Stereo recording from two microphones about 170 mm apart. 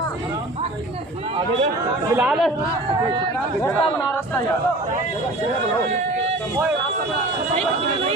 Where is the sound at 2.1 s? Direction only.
5° right (ahead or behind).